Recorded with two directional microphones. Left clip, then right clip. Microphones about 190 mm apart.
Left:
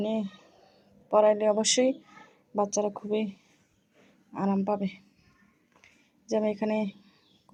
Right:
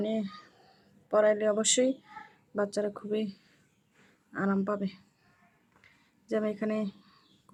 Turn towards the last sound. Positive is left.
turn(degrees=0)  # may be behind; listen again after turning